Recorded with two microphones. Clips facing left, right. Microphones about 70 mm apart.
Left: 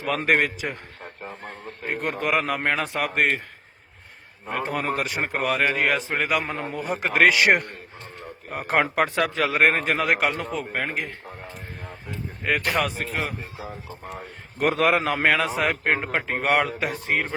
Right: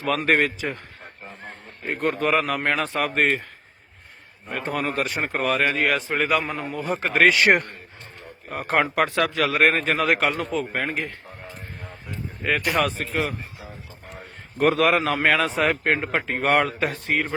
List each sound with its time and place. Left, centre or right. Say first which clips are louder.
0.3 s a man's voice: even; centre
1.9 s a man's voice: right 3 dB; centre
4.5 s a man's voice: even; centre
6.1 s a man's voice: right 2 dB; centre
6.6 s a man's voice: right 1 dB; left; by 7.7 s centre
8.4 s a man's voice: right 1 dB; centre
10.7 s a man's voice: right 1 dB; centre
12.4 s a man's voice: right 1 dB; centre
14.7 s a man's voice: right 1 dB; left
16.9 s speech: even; left